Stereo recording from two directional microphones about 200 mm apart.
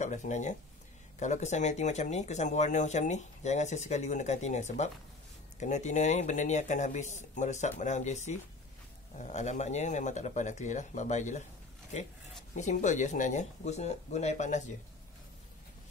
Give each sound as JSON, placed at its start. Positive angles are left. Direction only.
{"t": 0.0, "sound": "speech", "side_deg": 35}
{"t": 12.5, "sound": "speech", "side_deg": 35}